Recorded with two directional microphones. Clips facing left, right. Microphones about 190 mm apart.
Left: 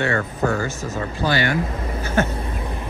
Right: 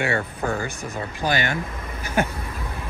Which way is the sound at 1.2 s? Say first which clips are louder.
Left 3 dB; 20° right (ahead or behind).